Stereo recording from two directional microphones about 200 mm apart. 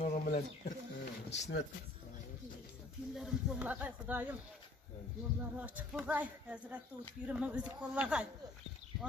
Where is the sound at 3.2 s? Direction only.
5° right (ahead or behind).